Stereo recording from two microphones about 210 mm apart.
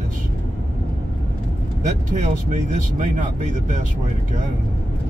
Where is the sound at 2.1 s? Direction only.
35° right (ahead or behind).